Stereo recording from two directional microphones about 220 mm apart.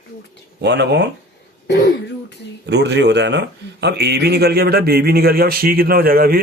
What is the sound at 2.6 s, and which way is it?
Speech, 50° right (ahead or behind).